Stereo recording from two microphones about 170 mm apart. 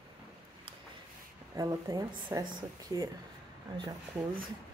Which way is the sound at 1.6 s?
20° right (ahead or behind).